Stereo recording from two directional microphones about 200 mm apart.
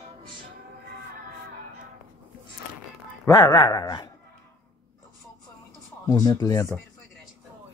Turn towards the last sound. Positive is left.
turn(degrees=20)  # may be behind; listen again after turning